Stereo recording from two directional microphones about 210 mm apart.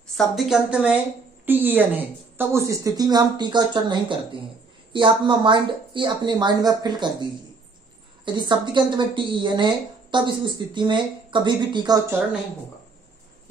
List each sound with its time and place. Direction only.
0.1 s a woman's voice: centre (ahead or behind); by 7.2 s 20° right (ahead or behind)
8.4 s a woman's voice: 20° right (ahead or behind)